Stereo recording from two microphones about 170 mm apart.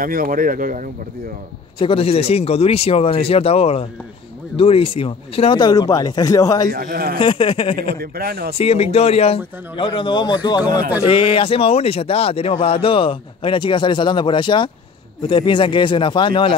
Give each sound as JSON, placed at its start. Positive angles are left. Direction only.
{"t": 0.0, "sound": "speech", "side_deg": -55}
{"t": 1.8, "sound": "speech", "side_deg": 35}
{"t": 6.7, "sound": "speech", "side_deg": -60}
{"t": 7.2, "sound": "speech", "side_deg": 30}
{"t": 7.9, "sound": "speech", "side_deg": -65}
{"t": 8.5, "sound": "speech", "side_deg": 35}